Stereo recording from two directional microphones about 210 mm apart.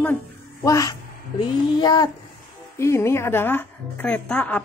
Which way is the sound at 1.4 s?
20° left (ahead or behind).